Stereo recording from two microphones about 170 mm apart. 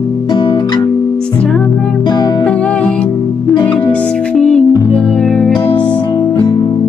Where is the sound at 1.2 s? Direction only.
5° left (ahead or behind).